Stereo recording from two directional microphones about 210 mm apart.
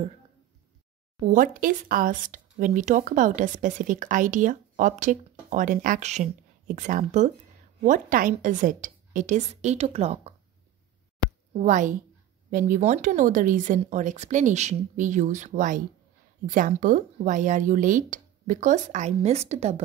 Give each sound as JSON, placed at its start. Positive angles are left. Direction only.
{"t": 1.2, "sound": "speech", "side_deg": -40}
{"t": 11.5, "sound": "speech", "side_deg": -35}